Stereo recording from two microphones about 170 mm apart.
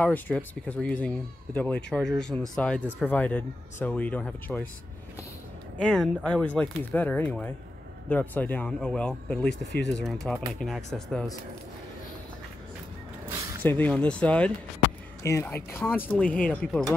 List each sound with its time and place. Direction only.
0.0 s speech: 10° left (ahead or behind)
5.8 s speech: 5° left (ahead or behind)
9.5 s speech: 90° left
10.0 s speech: centre (ahead or behind)
13.6 s speech: 10° left (ahead or behind)